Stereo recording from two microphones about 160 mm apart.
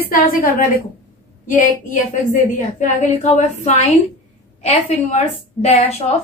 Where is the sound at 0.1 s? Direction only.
65° left (ahead or behind).